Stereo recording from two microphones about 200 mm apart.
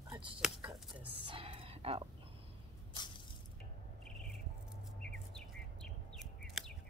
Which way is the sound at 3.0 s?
20° left (ahead or behind).